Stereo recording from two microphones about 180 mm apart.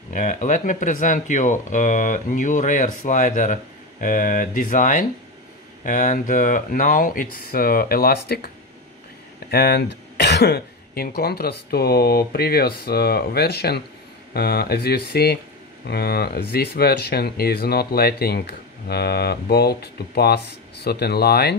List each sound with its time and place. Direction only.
0.1 s speech: 45° left (ahead or behind); by 8.5 s 60° left (ahead or behind)
9.5 s speech: 60° left (ahead or behind)